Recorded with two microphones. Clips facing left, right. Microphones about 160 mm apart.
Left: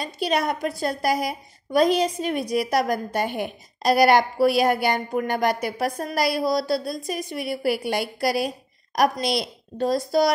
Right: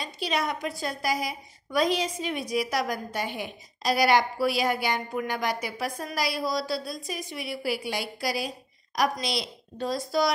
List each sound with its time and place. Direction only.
0.0 s a woman's voice: 55° left (ahead or behind)